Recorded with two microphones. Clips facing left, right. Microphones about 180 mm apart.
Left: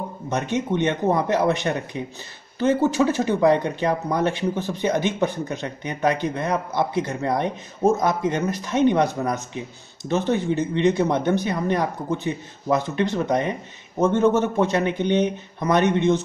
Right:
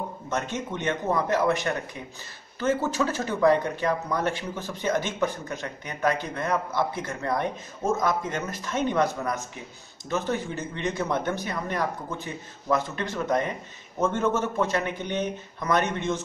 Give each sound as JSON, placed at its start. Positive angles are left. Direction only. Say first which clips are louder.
{"t": 0.3, "sound": "speech", "louder": "left 7 dB", "side_deg": 15}